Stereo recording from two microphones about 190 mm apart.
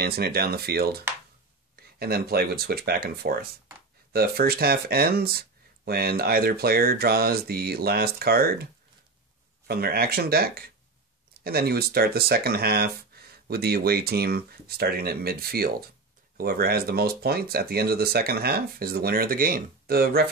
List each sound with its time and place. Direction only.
0.0 s speech: 55° right (ahead or behind)
9.7 s speech: 55° right (ahead or behind)